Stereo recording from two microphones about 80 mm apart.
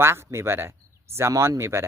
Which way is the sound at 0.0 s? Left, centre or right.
Right.